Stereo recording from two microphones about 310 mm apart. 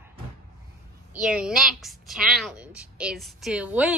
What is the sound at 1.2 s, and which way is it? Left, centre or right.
A woman's voice, centre.